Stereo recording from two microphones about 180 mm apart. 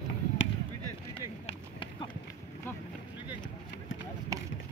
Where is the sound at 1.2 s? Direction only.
30° left (ahead or behind).